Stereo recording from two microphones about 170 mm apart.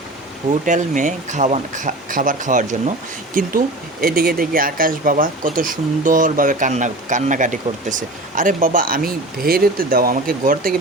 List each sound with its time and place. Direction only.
0.6 s speech: 45° right (ahead or behind)